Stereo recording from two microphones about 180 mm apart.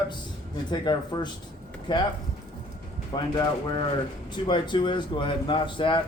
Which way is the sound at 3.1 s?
25° left (ahead or behind).